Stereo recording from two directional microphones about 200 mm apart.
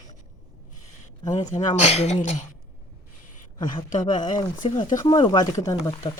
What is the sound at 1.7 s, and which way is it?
Speech, 35° left (ahead or behind).